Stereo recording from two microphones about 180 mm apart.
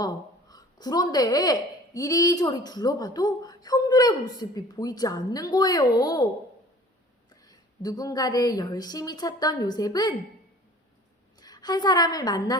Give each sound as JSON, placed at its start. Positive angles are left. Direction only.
{"t": 0.0, "sound": "a woman's voice", "side_deg": 20}
{"t": 7.4, "sound": "a woman's voice", "side_deg": 20}
{"t": 11.3, "sound": "a woman's voice", "side_deg": 20}